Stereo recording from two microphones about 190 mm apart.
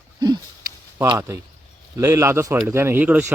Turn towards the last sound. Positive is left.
turn(degrees=-10)  # may be behind; listen again after turning